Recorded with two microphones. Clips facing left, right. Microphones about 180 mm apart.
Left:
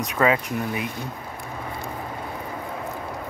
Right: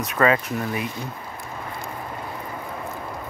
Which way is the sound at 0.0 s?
15° left (ahead or behind).